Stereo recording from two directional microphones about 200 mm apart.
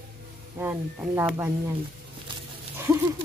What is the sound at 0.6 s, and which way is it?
Speech, 10° right (ahead or behind).